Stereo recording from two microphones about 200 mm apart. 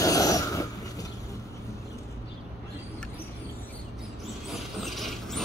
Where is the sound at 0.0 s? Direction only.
15° left (ahead or behind).